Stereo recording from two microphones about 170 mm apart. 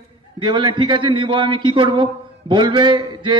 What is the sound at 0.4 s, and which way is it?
A man's voice, 25° right (ahead or behind).